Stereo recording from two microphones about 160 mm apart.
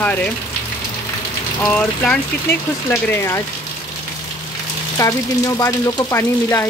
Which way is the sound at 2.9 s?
15° left (ahead or behind).